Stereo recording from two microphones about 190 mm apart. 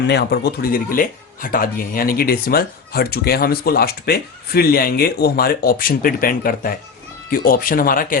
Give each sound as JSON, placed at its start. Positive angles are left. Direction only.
{"t": 0.1, "sound": "speech", "side_deg": 60}